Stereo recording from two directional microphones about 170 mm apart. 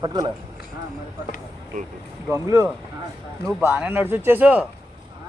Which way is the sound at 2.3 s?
15° right (ahead or behind).